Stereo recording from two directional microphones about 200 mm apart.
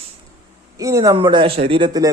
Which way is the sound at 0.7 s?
15° right (ahead or behind).